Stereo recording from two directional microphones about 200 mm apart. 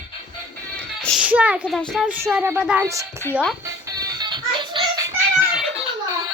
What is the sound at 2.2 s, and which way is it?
Speech, 10° right (ahead or behind).